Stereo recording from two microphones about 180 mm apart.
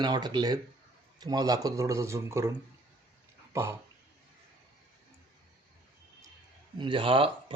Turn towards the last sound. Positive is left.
turn(degrees=-30)  # may be behind; listen again after turning